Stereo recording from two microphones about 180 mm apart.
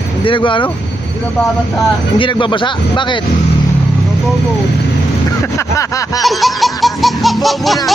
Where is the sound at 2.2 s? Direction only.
25° left (ahead or behind).